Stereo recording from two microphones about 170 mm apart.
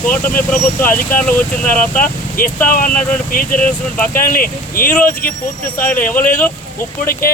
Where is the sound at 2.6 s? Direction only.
55° left (ahead or behind).